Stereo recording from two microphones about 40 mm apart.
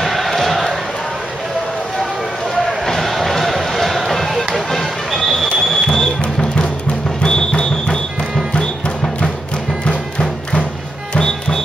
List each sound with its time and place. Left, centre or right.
0.0 s a sound: centre
2.8 s run: centre
4.6 s basketball bounce: centre
5.9 s music: centre
7.2 s music: left
11.1 s music: centre